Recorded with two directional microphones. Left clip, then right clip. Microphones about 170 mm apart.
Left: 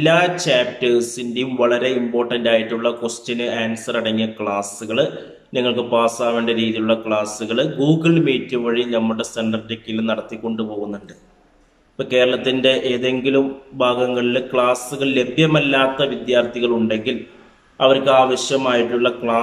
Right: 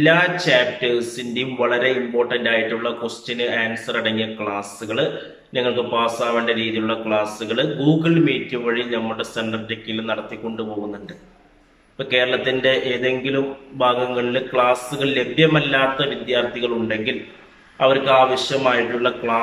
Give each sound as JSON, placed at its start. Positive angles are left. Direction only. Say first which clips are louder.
{"t": 0.0, "sound": "a man's voice", "louder": "even", "side_deg": 15}
{"t": 12.0, "sound": "a man's voice", "louder": "left 2 dB", "side_deg": 15}